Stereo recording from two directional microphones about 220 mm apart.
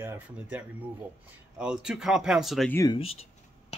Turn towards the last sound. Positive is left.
turn(degrees=20)  # may be behind; listen again after turning